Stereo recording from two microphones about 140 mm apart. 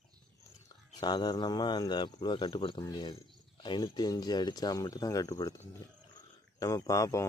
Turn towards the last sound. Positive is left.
turn(degrees=25)  # may be behind; listen again after turning